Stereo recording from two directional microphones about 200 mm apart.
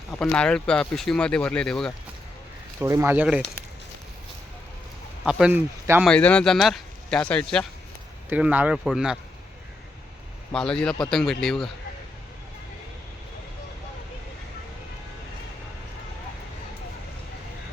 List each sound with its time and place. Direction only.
0.2 s speech: 5° left (ahead or behind)
2.8 s speech: 15° right (ahead or behind)
5.2 s speech: 5° right (ahead or behind)
6.1 s speech: 5° left (ahead or behind)
8.3 s speech: 5° right (ahead or behind)
10.5 s speech: 5° left (ahead or behind)